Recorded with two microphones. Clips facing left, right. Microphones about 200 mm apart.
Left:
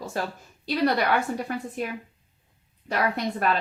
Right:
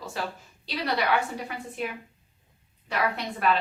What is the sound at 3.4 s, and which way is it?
Speech, 45° left (ahead or behind).